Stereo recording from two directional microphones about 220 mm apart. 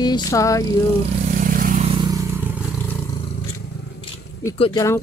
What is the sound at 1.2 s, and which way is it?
Vehicle, 40° right (ahead or behind).